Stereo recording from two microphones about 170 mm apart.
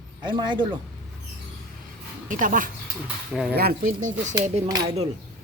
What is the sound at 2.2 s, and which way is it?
Speech, 50° right (ahead or behind).